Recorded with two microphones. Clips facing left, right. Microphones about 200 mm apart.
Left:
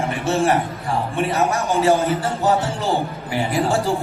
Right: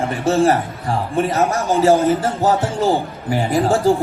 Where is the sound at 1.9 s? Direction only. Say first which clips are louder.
Right 5 dB; 50° right (ahead or behind).